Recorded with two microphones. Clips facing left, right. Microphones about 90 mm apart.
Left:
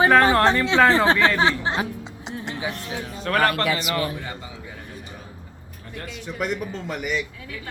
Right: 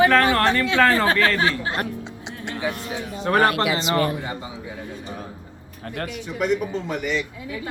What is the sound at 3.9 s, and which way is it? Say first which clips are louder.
Speech: right 4 dB; 50° right (ahead or behind).